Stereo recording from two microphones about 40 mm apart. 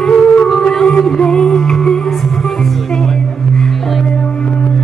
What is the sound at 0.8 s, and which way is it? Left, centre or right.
Music, centre.